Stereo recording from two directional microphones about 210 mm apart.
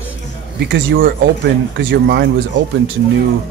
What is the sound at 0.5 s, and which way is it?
A man's voice, 55° right (ahead or behind).